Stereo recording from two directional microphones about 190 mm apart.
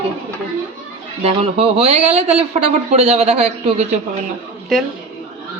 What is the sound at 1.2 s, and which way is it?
A woman's voice, 30° right (ahead or behind).